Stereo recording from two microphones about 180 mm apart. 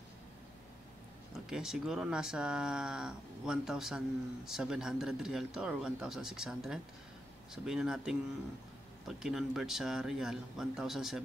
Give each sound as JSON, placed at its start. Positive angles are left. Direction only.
{"t": 1.5, "sound": "speech", "side_deg": -5}